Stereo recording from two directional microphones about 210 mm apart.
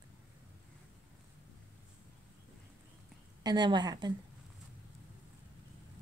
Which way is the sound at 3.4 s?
20° right (ahead or behind).